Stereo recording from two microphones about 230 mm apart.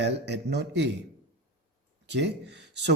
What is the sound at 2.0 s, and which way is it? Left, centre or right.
Speech, right.